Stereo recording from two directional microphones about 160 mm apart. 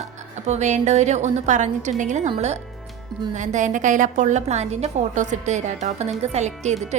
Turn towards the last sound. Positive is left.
turn(degrees=-45)  # may be behind; listen again after turning